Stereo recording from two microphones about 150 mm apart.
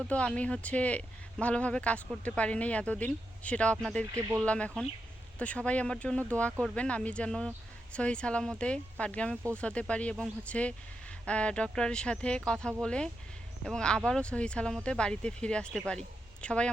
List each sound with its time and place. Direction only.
0.0 s speech: 5° left (ahead or behind)
4.1 s speech: 15° right (ahead or behind)
4.4 s speech: 10° left (ahead or behind)